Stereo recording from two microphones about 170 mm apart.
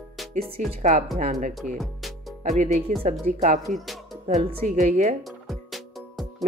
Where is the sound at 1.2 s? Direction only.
45° right (ahead or behind).